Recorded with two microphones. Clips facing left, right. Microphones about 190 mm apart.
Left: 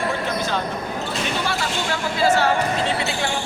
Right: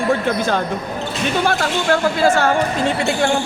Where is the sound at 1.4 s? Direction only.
50° right (ahead or behind).